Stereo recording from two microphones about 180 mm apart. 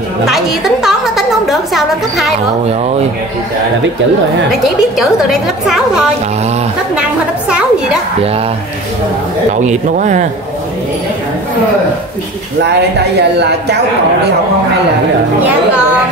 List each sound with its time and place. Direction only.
0.3 s a woman's voice: centre (ahead or behind)
4.9 s a woman's voice: centre (ahead or behind)
9.7 s speech: 45° right (ahead or behind)
13.2 s speech: 70° right (ahead or behind)